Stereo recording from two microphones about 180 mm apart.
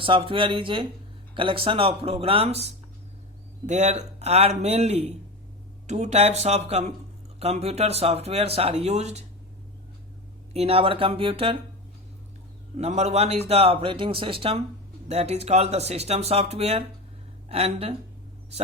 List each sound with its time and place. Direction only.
0.0 s speech: 30° right (ahead or behind)
10.5 s speech: 35° right (ahead or behind)
12.8 s speech: 35° right (ahead or behind)